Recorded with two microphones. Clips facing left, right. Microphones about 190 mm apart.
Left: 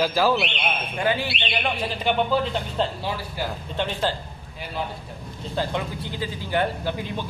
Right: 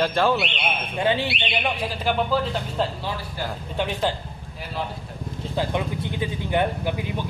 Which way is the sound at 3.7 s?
10° right (ahead or behind).